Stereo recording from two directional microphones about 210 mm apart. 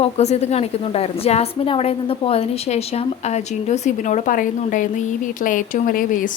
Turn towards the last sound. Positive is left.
turn(degrees=40)  # may be behind; listen again after turning